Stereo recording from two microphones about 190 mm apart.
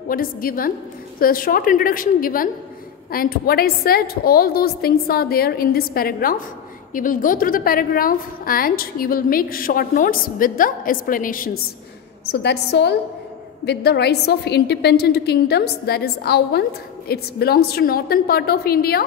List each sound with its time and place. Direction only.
0.1 s a woman's voice: 50° left (ahead or behind)
12.3 s a woman's voice: 60° left (ahead or behind)